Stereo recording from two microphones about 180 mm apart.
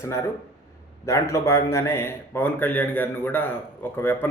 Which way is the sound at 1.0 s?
15° left (ahead or behind).